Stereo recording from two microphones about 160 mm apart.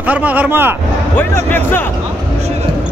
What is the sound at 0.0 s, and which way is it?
Speech, 10° right (ahead or behind).